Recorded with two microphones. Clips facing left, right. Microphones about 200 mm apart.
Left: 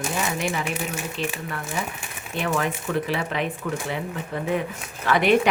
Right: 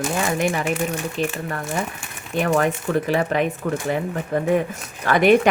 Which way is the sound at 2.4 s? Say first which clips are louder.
Right 5 dB; 45° right (ahead or behind).